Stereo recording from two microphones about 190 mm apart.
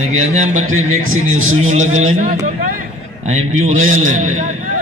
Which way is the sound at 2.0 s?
40° right (ahead or behind).